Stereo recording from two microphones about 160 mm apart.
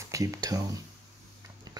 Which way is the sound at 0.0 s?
20° right (ahead or behind).